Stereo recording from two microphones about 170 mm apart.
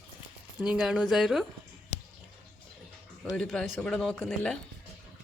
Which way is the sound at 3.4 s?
Centre (ahead or behind).